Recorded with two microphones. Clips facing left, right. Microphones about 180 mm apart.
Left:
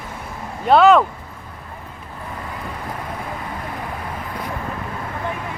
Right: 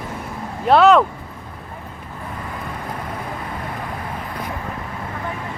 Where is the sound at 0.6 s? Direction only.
Centre (ahead or behind).